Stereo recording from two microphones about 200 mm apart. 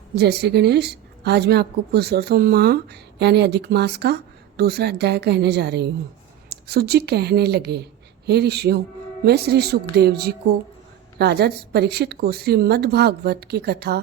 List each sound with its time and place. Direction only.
0.2 s a woman's voice: 55° right (ahead or behind)